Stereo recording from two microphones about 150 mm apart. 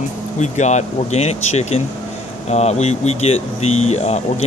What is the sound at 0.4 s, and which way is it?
Speech, 50° left (ahead or behind).